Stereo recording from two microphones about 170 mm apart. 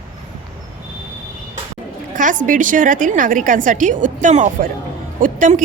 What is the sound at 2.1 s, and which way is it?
A woman's voice, 50° right (ahead or behind).